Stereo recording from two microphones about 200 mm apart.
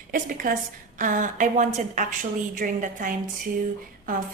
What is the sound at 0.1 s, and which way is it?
A woman's voice, 45° right (ahead or behind).